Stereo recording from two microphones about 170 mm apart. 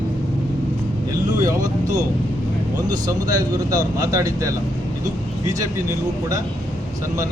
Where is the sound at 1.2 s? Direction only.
20° right (ahead or behind).